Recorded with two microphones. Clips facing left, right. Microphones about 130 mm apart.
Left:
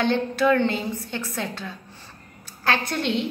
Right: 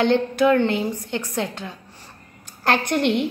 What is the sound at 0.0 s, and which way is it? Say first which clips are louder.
A woman's voice: right 3 dB; 15° right (ahead or behind).